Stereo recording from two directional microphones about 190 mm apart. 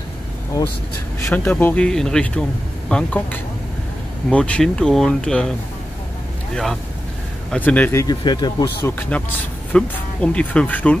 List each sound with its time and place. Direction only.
1.2 s speech: 10° left (ahead or behind)
6.5 s speech: centre (ahead or behind); by 8.6 s 20° left (ahead or behind)
9.1 s speech: 5° left (ahead or behind)